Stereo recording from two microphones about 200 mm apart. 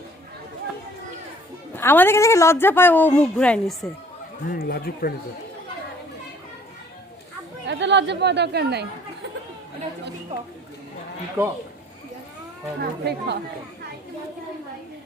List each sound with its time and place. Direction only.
1.7 s a woman's voice: 10° left (ahead or behind)
4.4 s speech: 50° left (ahead or behind)
7.7 s speech: 60° right (ahead or behind)
12.8 s speech: 55° right (ahead or behind)